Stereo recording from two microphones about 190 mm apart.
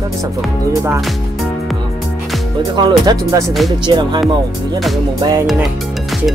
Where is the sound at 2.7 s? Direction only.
20° right (ahead or behind).